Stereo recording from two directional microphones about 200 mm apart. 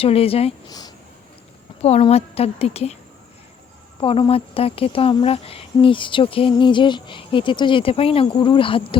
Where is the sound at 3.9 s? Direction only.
25° left (ahead or behind).